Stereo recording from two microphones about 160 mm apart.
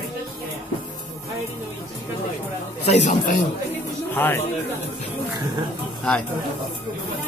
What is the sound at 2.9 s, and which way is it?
Speech, 50° left (ahead or behind).